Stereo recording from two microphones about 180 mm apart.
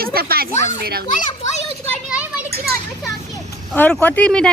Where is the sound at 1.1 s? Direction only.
40° left (ahead or behind).